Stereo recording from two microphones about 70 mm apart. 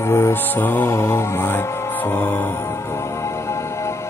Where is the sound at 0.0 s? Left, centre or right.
Left.